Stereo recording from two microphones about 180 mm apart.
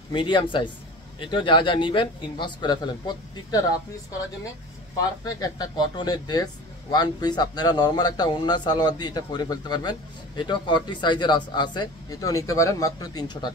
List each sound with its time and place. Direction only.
0.1 s speech: 30° left (ahead or behind)
5.2 s speech: 20° left (ahead or behind)